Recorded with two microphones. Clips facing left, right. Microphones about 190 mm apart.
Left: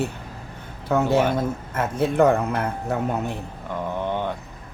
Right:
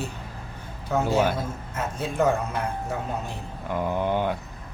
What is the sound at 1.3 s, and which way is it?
Speech, 55° left (ahead or behind).